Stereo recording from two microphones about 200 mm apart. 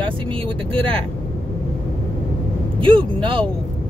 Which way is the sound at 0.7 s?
25° right (ahead or behind).